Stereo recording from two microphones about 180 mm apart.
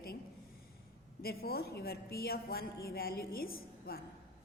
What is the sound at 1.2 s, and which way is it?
A woman's voice, 60° left (ahead or behind).